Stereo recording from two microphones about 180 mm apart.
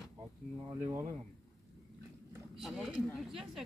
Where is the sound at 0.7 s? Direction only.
25° right (ahead or behind).